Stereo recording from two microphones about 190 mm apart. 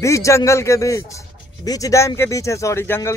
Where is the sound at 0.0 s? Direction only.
15° left (ahead or behind).